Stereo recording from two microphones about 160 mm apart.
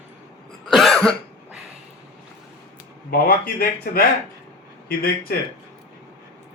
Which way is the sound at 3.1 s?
75° left (ahead or behind).